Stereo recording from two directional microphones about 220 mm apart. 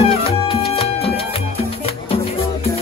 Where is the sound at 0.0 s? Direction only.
25° left (ahead or behind).